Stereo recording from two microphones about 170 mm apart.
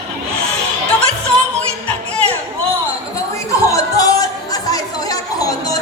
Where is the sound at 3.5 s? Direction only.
20° left (ahead or behind).